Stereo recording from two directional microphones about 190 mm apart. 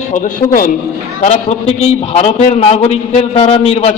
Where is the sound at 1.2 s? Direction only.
35° left (ahead or behind).